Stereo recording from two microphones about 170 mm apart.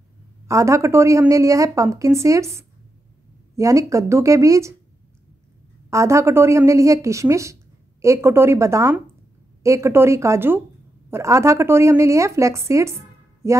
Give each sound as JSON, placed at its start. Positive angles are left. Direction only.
{"t": 0.5, "sound": "speech", "side_deg": -15}
{"t": 5.9, "sound": "speech", "side_deg": -15}